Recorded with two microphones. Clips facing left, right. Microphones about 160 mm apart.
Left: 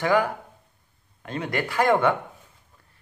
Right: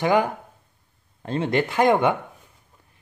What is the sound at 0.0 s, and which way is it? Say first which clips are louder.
Speech: right 2 dB; 20° right (ahead or behind).